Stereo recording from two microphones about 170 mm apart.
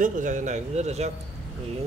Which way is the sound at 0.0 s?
45° right (ahead or behind).